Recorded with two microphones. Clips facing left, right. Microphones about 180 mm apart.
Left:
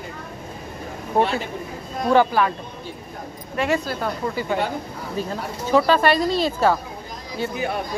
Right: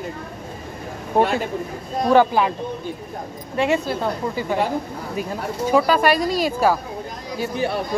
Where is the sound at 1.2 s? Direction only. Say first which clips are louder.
Right 2 dB; 20° right (ahead or behind).